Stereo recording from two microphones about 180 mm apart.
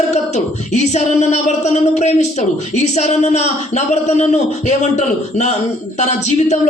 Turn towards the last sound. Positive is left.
turn(degrees=40)  # may be behind; listen again after turning